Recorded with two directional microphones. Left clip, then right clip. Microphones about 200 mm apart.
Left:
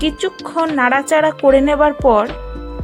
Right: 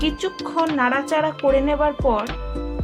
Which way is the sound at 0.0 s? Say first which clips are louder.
Left 4 dB; 25° left (ahead or behind).